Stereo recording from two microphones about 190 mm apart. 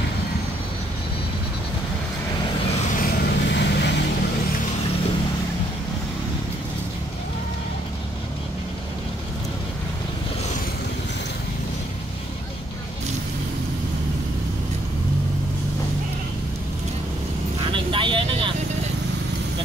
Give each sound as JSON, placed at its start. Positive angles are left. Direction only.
{"t": 3.0, "sound": "vehicle", "side_deg": 55}
{"t": 17.6, "sound": "vehicle", "side_deg": -25}